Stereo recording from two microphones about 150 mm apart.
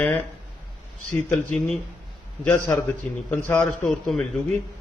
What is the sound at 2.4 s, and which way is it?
A man's voice, 15° left (ahead or behind).